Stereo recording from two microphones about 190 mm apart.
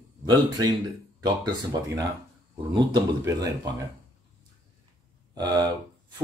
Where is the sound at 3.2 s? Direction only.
20° right (ahead or behind).